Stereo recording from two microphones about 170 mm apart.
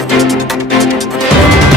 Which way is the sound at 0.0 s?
Centre (ahead or behind).